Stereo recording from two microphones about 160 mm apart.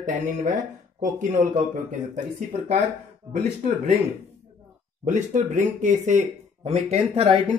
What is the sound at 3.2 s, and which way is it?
Speech, 25° right (ahead or behind).